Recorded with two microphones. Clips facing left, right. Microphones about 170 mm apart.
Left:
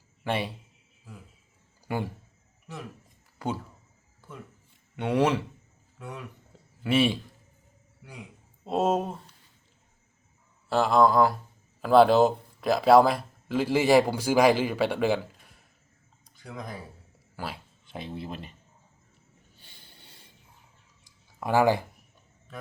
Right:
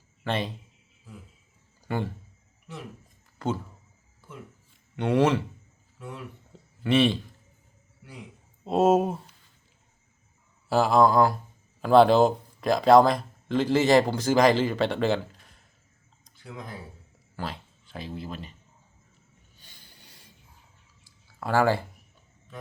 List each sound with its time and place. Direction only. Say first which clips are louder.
0.3 s a man's voice: even; 10° left (ahead or behind)
1.9 s a man's voice: right 1 dB; 10° left (ahead or behind)
3.3 s speech: right 2 dB; 10° left (ahead or behind)
4.9 s speech: right 2 dB; 5° left (ahead or behind)
6.8 s a man's voice: right 2 dB; 5° left (ahead or behind)
8.6 s speech: right 5 dB; centre (ahead or behind)
10.7 s a man's voice: right 1 dB; centre (ahead or behind)
16.2 s a sound: left 2 dB; 15° left (ahead or behind)
17.3 s speech: right 2 dB; 5° left (ahead or behind)
17.8 s speech: even; 20° left (ahead or behind)
21.0 s a sound: left 1 dB; 15° left (ahead or behind)